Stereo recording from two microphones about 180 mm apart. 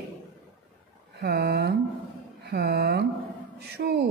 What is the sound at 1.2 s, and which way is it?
Speech, 60° right (ahead or behind).